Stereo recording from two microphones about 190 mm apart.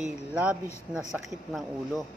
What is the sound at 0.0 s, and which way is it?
Speech, 5° right (ahead or behind).